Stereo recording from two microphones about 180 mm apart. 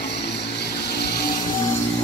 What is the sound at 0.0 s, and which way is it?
Vehicle, 70° left (ahead or behind).